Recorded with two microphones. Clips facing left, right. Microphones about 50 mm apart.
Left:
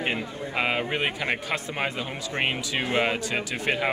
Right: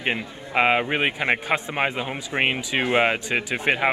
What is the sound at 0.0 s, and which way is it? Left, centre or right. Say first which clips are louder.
Speech: right 1 dB; right.